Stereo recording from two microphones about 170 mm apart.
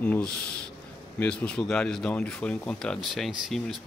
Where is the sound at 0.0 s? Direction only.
10° left (ahead or behind).